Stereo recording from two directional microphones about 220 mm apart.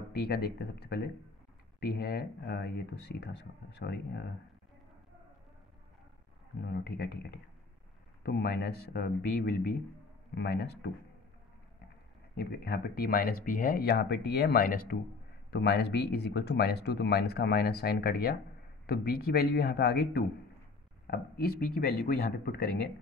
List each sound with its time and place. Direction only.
0.1 s speech: 45° left (ahead or behind)
6.6 s speech: 45° left (ahead or behind)
12.4 s speech: 45° left (ahead or behind)